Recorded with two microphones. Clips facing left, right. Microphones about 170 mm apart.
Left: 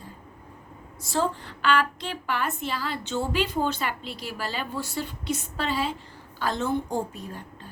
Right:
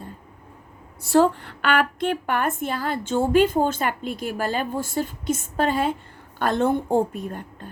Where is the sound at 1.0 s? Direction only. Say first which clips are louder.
Right 9 dB; 65° right (ahead or behind).